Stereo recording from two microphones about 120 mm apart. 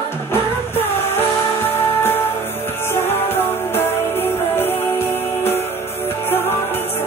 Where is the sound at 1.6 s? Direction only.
20° left (ahead or behind).